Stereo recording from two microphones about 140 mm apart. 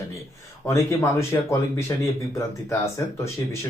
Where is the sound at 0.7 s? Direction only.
20° left (ahead or behind).